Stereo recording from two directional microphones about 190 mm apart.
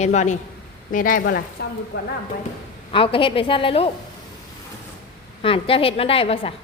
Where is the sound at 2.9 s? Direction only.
25° left (ahead or behind).